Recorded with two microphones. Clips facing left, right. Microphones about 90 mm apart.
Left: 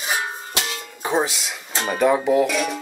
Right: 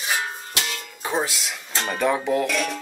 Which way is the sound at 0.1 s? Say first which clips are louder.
Left 2 dB; 15° left (ahead or behind).